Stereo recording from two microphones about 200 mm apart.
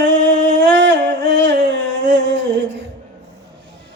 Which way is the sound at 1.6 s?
65° right (ahead or behind).